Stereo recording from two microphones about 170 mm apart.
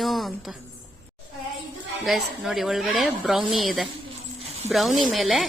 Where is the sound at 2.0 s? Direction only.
Centre (ahead or behind).